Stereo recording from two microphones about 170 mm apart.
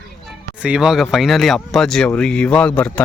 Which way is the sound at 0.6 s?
5° right (ahead or behind).